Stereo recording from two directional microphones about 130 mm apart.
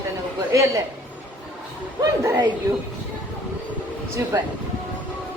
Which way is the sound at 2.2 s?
25° right (ahead or behind).